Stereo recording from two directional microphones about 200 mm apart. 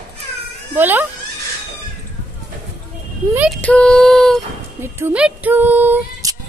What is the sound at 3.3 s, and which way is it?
Female singing, 5° right (ahead or behind).